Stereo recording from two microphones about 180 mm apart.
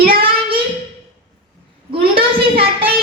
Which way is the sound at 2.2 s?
55° right (ahead or behind).